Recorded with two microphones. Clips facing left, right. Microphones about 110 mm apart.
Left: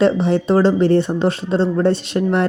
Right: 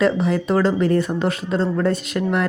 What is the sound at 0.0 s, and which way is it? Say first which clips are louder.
A woman's voice: left 3 dB; 30° left (ahead or behind).